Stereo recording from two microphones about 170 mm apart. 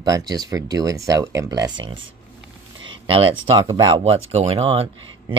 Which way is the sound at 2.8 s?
30° right (ahead or behind).